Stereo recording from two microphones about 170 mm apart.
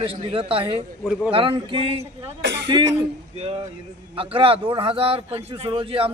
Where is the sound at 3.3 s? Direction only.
35° right (ahead or behind).